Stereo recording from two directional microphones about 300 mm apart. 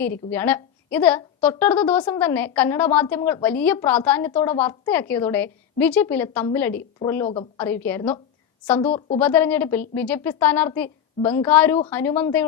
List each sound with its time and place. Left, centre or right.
0.0 s a woman's voice: centre
7.3 s a woman's voice: centre
7.6 s a woman's voice: centre